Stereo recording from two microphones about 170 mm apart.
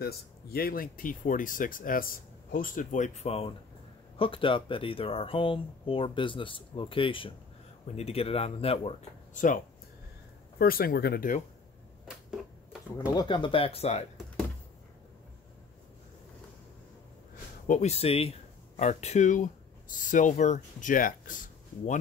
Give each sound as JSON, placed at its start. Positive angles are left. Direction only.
{"t": 0.0, "sound": "speech", "side_deg": 65}
{"t": 9.3, "sound": "speech", "side_deg": 50}
{"t": 10.6, "sound": "speech", "side_deg": 60}
{"t": 13.1, "sound": "speech", "side_deg": 25}
{"t": 17.6, "sound": "speech", "side_deg": 40}